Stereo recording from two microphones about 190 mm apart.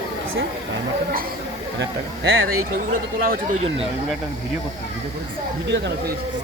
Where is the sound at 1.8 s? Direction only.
90° right.